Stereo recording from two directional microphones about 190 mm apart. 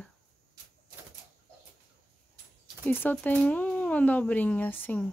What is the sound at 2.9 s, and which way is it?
A woman's voice, 10° left (ahead or behind).